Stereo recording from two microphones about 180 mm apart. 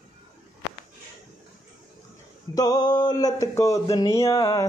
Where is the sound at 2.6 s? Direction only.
20° left (ahead or behind).